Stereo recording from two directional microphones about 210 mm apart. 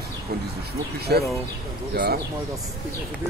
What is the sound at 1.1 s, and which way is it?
Speech, 50° right (ahead or behind).